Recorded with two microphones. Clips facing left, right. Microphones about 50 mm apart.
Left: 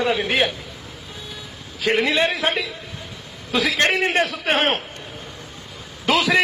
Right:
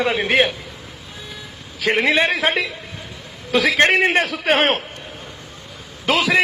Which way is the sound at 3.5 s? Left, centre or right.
Right.